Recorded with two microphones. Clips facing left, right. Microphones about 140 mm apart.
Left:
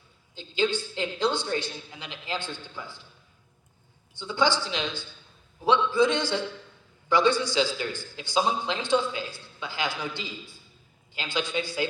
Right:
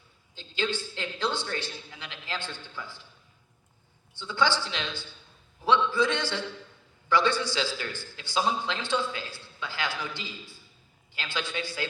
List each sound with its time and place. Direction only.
0.3 s a man's voice: 15° left (ahead or behind)
4.1 s a man's voice: 15° left (ahead or behind)